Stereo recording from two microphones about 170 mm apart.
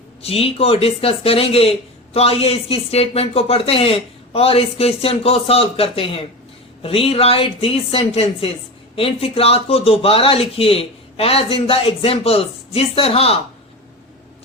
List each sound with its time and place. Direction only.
0.2 s speech: 35° left (ahead or behind)